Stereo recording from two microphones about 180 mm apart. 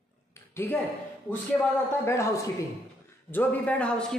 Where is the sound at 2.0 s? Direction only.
15° left (ahead or behind).